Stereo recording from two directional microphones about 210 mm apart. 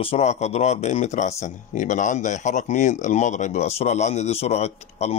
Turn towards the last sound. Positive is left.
turn(degrees=30)  # may be behind; listen again after turning